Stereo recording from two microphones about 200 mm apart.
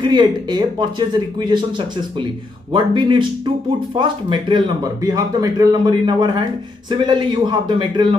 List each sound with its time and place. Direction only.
0.0 s a man's voice: 20° right (ahead or behind)